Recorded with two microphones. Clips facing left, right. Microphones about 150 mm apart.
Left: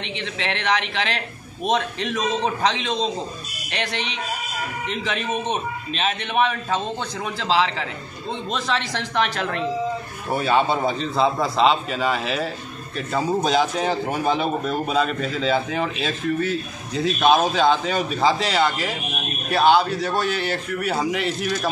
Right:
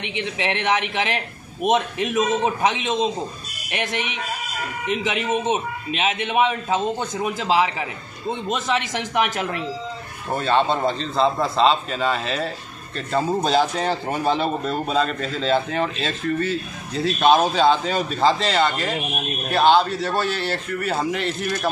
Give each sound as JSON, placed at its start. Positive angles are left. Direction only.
{"t": 0.0, "sound": "a man's voice", "side_deg": -15}
{"t": 10.3, "sound": "speech", "side_deg": 5}